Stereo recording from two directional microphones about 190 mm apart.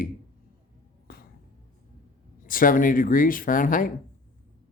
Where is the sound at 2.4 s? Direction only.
45° left (ahead or behind).